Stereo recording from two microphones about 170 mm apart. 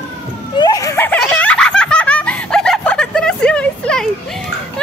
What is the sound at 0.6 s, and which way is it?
Giggle, 20° left (ahead or behind).